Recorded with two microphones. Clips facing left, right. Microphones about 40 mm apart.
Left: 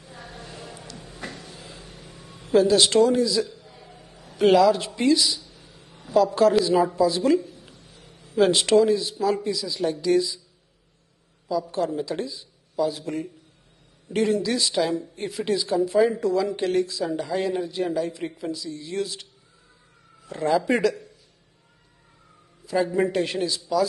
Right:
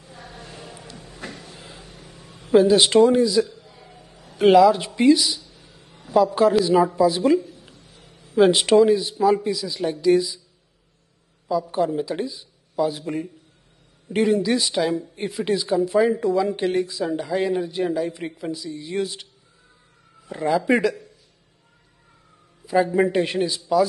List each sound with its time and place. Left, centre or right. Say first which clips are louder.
0.0 s a sound: even; centre
1.8 s vehicle: even; centre
2.5 s speech: right 3 dB; centre
3.2 s a man's voice: right 4 dB; centre
5.5 s a sound: even; centre
6.1 s a man's voice: right 1 dB; centre
7.6 s a sound: even; centre
8.3 s a man's voice: right 3 dB; centre
11.7 s speech: right 3 dB; centre
14.3 s speech: right 3 dB; centre
16.2 s speech: right 2 dB; right
18.9 s a man's voice: right 3 dB; right
20.2 s a man's voice: right 1 dB; centre
22.7 s speech: right 4 dB; centre